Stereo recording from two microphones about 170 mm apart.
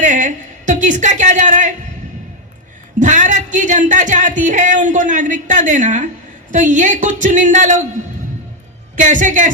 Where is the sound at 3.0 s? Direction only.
45° right (ahead or behind).